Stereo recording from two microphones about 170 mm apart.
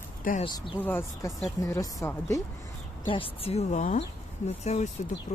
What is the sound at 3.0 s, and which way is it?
A woman's voice, 30° left (ahead or behind).